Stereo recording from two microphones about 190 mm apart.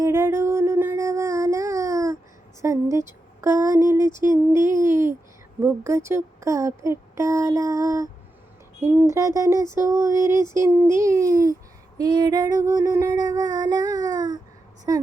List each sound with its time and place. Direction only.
0.0 s a sound: 15° right (ahead or behind)
2.6 s speech: 15° right (ahead or behind)
11.9 s female singing: 20° right (ahead or behind)
14.9 s speech: 15° right (ahead or behind)